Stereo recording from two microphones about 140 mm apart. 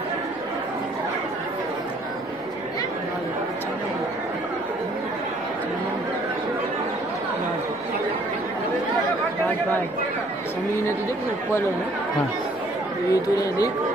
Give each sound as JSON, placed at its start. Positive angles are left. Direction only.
{"t": 13.1, "sound": "speech", "side_deg": 25}